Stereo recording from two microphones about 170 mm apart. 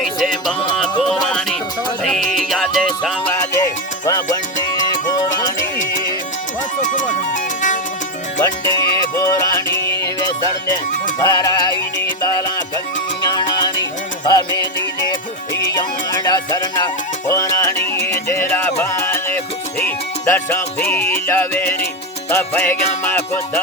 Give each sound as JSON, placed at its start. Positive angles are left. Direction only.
{"t": 0.0, "sound": "music", "side_deg": 0}
{"t": 4.0, "sound": "music", "side_deg": 20}
{"t": 6.8, "sound": "music", "side_deg": 50}
{"t": 8.4, "sound": "music", "side_deg": 20}